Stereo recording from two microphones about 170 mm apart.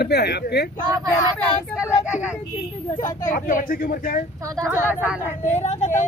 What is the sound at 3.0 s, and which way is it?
Speech, 50° left (ahead or behind).